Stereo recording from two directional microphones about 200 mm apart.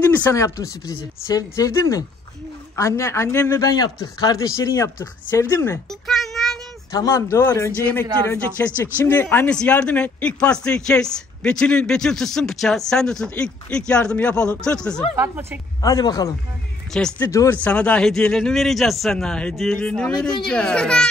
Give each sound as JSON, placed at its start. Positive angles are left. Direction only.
{"t": 0.1, "sound": "a man's voice", "side_deg": 15}
{"t": 5.9, "sound": "a sound", "side_deg": 0}
{"t": 6.9, "sound": "a man's voice", "side_deg": 15}
{"t": 15.1, "sound": "speech", "side_deg": -10}
{"t": 15.8, "sound": "speech", "side_deg": 20}
{"t": 16.9, "sound": "a man's voice", "side_deg": 5}